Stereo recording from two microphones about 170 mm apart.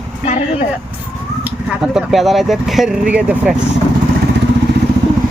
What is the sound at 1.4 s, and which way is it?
Speech, 5° right (ahead or behind).